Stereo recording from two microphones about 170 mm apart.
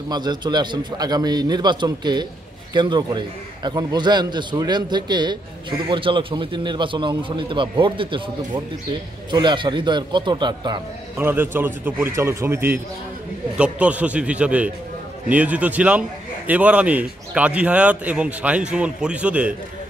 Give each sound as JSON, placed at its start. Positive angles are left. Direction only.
{"t": 0.1, "sound": "a man's voice", "side_deg": -25}
{"t": 9.3, "sound": "a man's voice", "side_deg": -25}
{"t": 11.1, "sound": "a man's voice", "side_deg": -10}